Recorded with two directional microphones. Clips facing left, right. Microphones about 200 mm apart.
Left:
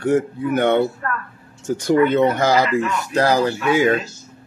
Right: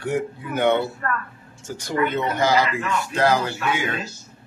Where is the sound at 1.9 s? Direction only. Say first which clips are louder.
Left 8 dB; 55° left (ahead or behind).